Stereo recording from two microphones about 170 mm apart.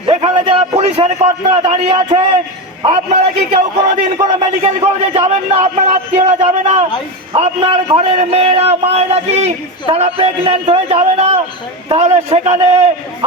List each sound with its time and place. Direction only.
0.1 s a sound: 30° right (ahead or behind)
1.9 s a man's voice: 25° right (ahead or behind)
2.8 s a man's voice: 40° right (ahead or behind)